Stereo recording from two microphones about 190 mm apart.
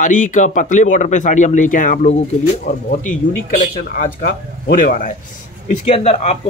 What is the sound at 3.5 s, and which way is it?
Speech, 45° left (ahead or behind).